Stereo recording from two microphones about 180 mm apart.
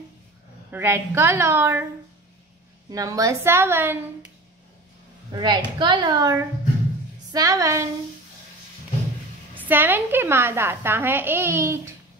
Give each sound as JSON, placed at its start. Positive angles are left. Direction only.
{"t": 0.7, "sound": "a woman's voice", "side_deg": -15}
{"t": 2.9, "sound": "a woman's voice", "side_deg": -20}
{"t": 5.3, "sound": "a woman's voice", "side_deg": -25}
{"t": 9.6, "sound": "a woman's voice", "side_deg": -10}